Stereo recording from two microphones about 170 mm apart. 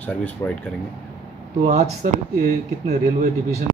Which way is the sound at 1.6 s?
40° right (ahead or behind).